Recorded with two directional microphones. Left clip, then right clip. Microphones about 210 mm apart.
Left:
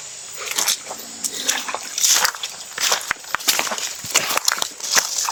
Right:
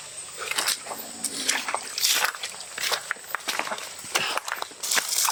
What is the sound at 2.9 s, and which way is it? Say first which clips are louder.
Walk: left 6 dB; 35° left (ahead or behind).